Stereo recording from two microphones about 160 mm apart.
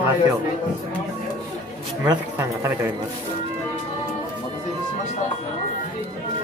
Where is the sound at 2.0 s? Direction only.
20° right (ahead or behind).